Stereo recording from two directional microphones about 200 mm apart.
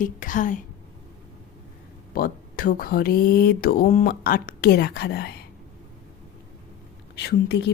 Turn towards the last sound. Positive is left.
turn(degrees=55)  # may be behind; listen again after turning